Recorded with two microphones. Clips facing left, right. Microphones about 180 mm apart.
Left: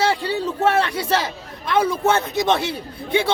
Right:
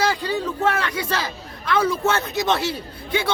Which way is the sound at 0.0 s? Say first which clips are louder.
Left 2 dB; 30° left (ahead or behind).